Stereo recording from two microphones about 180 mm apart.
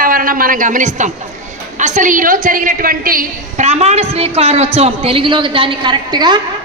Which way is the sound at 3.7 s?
35° right (ahead or behind).